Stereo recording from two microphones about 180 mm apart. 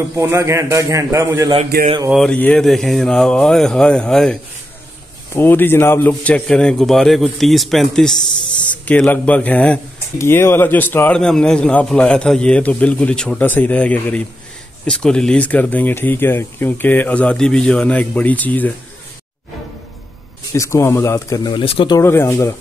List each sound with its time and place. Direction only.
0.1 s a man's voice: 15° right (ahead or behind)
2.0 s a man's voice: centre (ahead or behind)
20.5 s speech: 15° left (ahead or behind)
21.9 s speech: 15° left (ahead or behind)